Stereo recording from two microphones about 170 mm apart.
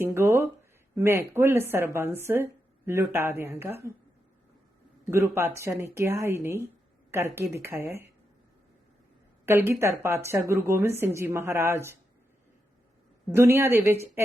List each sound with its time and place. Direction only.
0.0 s a woman's voice: 15° right (ahead or behind)
5.1 s a woman's voice: 15° right (ahead or behind)
9.5 s a woman's voice: 15° right (ahead or behind)
13.3 s a woman's voice: 15° right (ahead or behind)